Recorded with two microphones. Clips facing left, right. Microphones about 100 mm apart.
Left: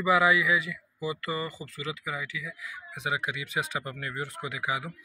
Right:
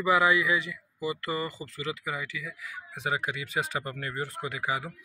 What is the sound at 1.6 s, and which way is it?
Speech, 20° right (ahead or behind).